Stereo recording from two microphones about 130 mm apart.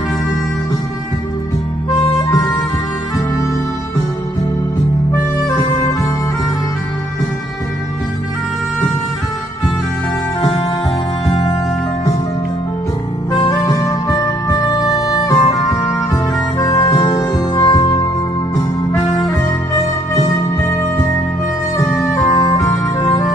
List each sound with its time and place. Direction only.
13.4 s music: 25° left (ahead or behind)
19.7 s music: 35° left (ahead or behind)
21.7 s music: 25° left (ahead or behind)